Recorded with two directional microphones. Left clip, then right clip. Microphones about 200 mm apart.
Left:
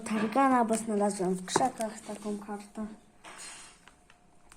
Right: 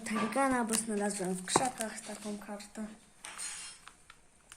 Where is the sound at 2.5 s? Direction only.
Centre (ahead or behind).